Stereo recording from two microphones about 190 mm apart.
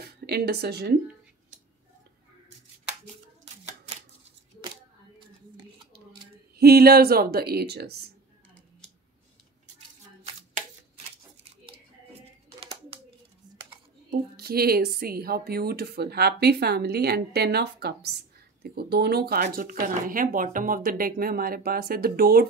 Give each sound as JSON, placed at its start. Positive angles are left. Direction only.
{"t": 0.3, "sound": "speech", "side_deg": -55}
{"t": 6.5, "sound": "speech", "side_deg": -55}
{"t": 14.3, "sound": "speech", "side_deg": -55}